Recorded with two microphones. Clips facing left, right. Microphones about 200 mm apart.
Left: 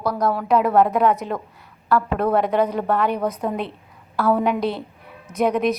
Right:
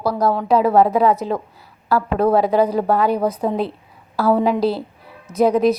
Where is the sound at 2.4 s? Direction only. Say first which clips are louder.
Right 4 dB; 30° right (ahead or behind).